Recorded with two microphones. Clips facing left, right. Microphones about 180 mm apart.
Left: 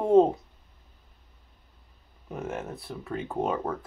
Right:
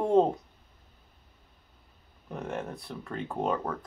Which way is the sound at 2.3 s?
Centre (ahead or behind).